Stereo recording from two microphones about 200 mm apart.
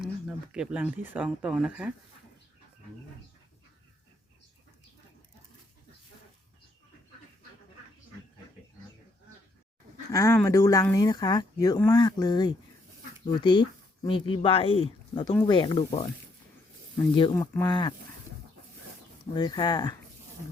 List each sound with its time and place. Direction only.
0.0 s speech: 5° right (ahead or behind)
10.1 s speech: 15° left (ahead or behind)
17.3 s speech: 15° left (ahead or behind)
19.2 s speech: 20° left (ahead or behind)